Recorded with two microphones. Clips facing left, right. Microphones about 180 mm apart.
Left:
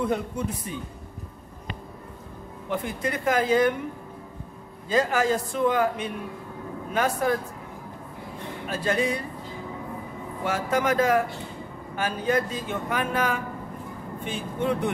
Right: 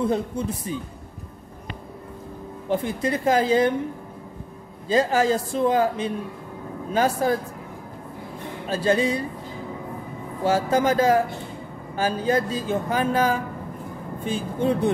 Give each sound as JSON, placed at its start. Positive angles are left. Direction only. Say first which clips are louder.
{"t": 0.0, "sound": "speech", "louder": "right 3 dB", "side_deg": -30}
{"t": 2.7, "sound": "speech", "louder": "right 5 dB", "side_deg": -30}
{"t": 4.8, "sound": "a man's voice", "louder": "right 3 dB", "side_deg": -30}
{"t": 8.6, "sound": "a man's voice", "louder": "right 4 dB", "side_deg": -30}
{"t": 10.4, "sound": "speech", "louder": "right 5 dB", "side_deg": -30}